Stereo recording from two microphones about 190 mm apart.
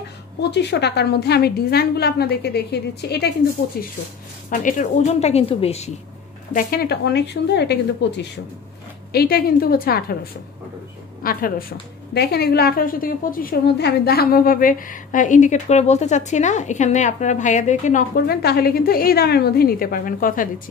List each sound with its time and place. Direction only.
0.4 s a woman's voice: 65° left (ahead or behind); by 5.9 s 30° left (ahead or behind)
6.5 s a woman's voice: 55° left (ahead or behind)
11.2 s a woman's voice: 50° left (ahead or behind)